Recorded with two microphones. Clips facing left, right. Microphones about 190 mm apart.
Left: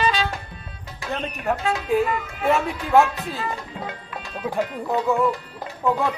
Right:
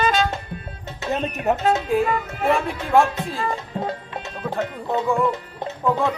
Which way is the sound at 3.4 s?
35° right (ahead or behind).